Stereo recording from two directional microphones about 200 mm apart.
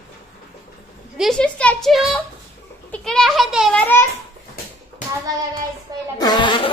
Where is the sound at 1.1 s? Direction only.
Centre (ahead or behind).